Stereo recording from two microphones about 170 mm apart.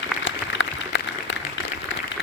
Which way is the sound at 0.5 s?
90° left.